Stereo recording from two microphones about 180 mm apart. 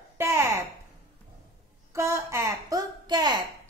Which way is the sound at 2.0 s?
15° right (ahead or behind).